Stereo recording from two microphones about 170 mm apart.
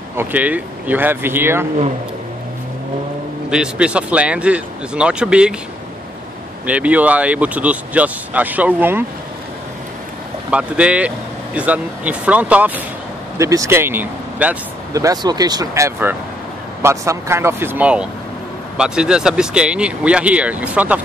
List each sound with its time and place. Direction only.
0.2 s speech: 10° right (ahead or behind)
3.4 s speech: 5° right (ahead or behind)
6.6 s speech: 10° right (ahead or behind)
10.5 s speech: 5° right (ahead or behind)